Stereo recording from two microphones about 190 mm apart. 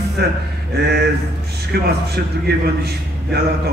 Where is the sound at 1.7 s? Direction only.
60° right (ahead or behind).